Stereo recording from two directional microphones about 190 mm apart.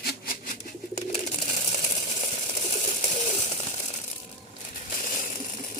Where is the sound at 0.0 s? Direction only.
55° left (ahead or behind).